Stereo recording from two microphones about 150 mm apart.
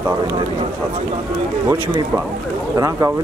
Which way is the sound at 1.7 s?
20° right (ahead or behind).